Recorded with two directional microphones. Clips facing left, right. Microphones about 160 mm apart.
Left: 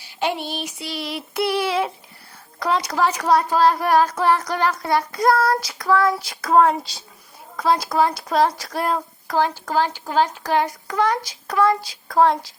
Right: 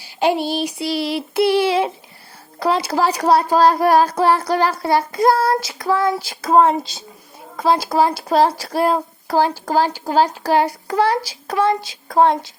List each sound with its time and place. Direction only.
0.2 s child singing: 35° right (ahead or behind)
2.6 s speech: 30° right (ahead or behind)